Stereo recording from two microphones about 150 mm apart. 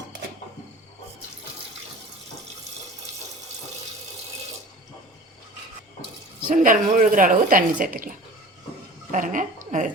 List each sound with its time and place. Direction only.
6.5 s speech: 60° right (ahead or behind)
9.1 s speech: 60° right (ahead or behind)